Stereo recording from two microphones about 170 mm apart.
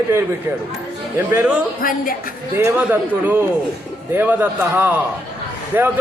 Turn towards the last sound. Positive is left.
turn(degrees=-10)  # may be behind; listen again after turning